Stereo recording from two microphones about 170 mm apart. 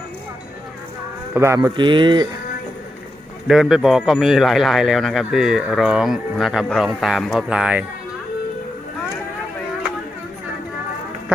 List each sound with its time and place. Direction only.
1.3 s speech: 15° right (ahead or behind)
3.4 s a man's voice: centre (ahead or behind)